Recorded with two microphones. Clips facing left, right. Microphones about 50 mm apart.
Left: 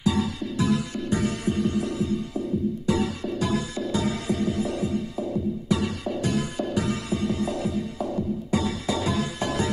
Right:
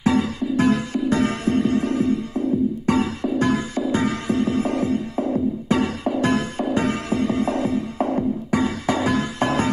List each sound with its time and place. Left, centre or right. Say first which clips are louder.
0.0 s music: right 5 dB; right
8.5 s music: right 4 dB; right